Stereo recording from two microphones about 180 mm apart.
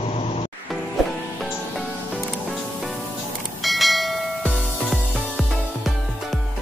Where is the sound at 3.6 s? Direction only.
Centre (ahead or behind).